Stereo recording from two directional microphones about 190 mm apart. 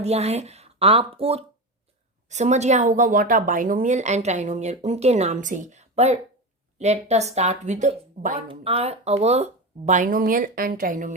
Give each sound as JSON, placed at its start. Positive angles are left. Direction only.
{"t": 0.0, "sound": "a woman's voice", "side_deg": -35}
{"t": 8.4, "sound": "speech", "side_deg": -30}